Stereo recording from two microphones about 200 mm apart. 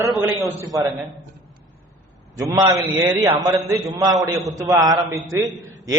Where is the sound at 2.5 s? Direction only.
15° right (ahead or behind).